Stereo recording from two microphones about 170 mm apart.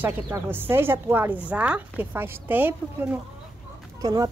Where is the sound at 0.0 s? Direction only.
10° right (ahead or behind).